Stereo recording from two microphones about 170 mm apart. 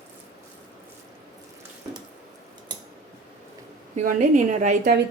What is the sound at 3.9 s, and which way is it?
Speech, 45° right (ahead or behind).